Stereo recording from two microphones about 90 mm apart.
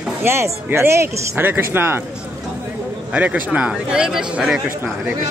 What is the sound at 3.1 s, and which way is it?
A woman's voice, 15° right (ahead or behind).